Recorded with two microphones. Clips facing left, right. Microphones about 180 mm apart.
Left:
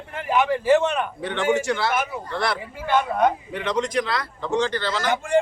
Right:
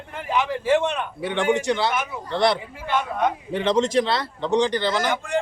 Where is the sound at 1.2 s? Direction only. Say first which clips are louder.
Right 2 dB; 15° right (ahead or behind).